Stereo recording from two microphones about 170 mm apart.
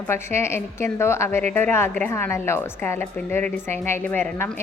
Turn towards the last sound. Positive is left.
turn(degrees=10)  # may be behind; listen again after turning